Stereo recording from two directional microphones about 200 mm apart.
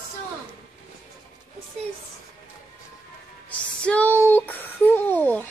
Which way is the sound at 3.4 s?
5° left (ahead or behind).